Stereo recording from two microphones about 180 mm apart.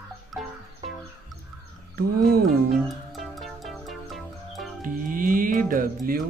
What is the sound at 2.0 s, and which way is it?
Speech, 55° right (ahead or behind).